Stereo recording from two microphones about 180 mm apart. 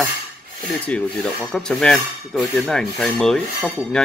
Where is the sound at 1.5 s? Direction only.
5° left (ahead or behind).